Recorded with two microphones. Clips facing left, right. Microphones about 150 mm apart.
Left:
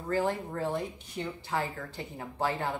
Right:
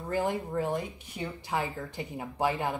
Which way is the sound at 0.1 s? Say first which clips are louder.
Even; 15° right (ahead or behind).